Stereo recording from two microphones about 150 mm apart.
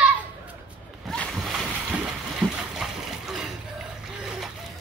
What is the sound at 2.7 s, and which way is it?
Splash, centre (ahead or behind).